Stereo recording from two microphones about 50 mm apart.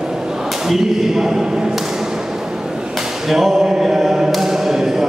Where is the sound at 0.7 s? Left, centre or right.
Centre.